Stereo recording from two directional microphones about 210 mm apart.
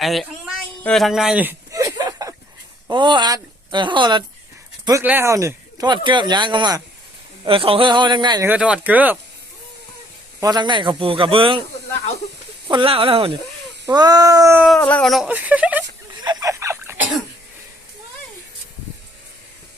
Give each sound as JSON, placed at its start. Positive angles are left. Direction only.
{"t": 0.0, "sound": "a sound", "side_deg": 0}
{"t": 2.8, "sound": "speech", "side_deg": -20}
{"t": 4.9, "sound": "speech", "side_deg": -10}
{"t": 8.4, "sound": "speech", "side_deg": -5}
{"t": 10.4, "sound": "speech", "side_deg": -20}
{"t": 12.6, "sound": "speech", "side_deg": -25}
{"t": 14.8, "sound": "speech", "side_deg": 5}
{"t": 16.2, "sound": "a sound", "side_deg": -15}